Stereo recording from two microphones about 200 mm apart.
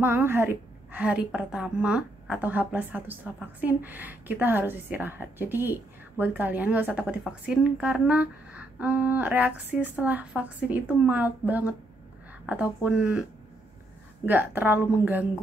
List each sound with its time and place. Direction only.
0.0 s a woman's voice: 10° right (ahead or behind)
14.2 s a woman's voice: 10° right (ahead or behind)